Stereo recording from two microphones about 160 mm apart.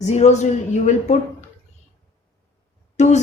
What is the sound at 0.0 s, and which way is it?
A woman's voice, 45° left (ahead or behind).